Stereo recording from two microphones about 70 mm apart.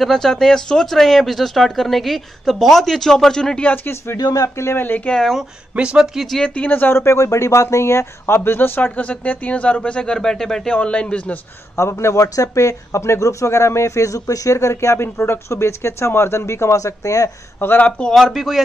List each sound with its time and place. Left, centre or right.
0.0 s speech: centre
3.6 s speech: left
4.2 s speech: left
4.6 s speech: left
4.8 s speech: left
5.1 s speech: centre
5.8 s speech: centre
6.4 s speech: centre
11.7 s speech: left
17.6 s speech: left
18.1 s speech: centre